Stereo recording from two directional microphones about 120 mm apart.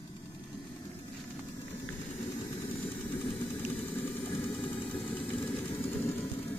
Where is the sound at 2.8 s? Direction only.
15° left (ahead or behind).